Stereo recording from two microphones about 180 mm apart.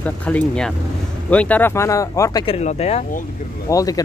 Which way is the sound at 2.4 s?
35° left (ahead or behind).